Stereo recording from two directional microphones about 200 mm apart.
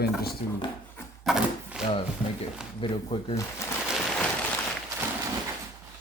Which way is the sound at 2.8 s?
25° left (ahead or behind).